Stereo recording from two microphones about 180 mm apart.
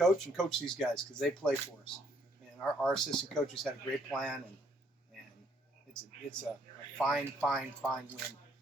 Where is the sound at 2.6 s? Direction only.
5° left (ahead or behind).